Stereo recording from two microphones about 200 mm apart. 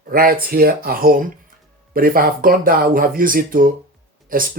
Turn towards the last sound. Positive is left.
turn(degrees=-45)  # may be behind; listen again after turning